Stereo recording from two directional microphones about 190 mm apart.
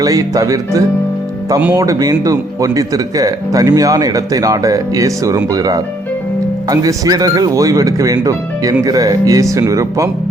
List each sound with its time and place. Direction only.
0.0 s speech: 15° right (ahead or behind)